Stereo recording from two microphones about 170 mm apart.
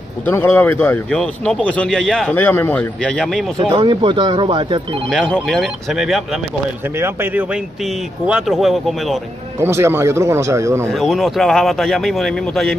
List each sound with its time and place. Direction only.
0.3 s speech: 15° left (ahead or behind)
3.5 s speech: 30° right (ahead or behind)
5.1 s speech: 5° left (ahead or behind)
7.0 s a man's voice: 15° right (ahead or behind)
8.3 s speech: 5° right (ahead or behind)
9.6 s a man's voice: 15° right (ahead or behind)
10.9 s speech: centre (ahead or behind)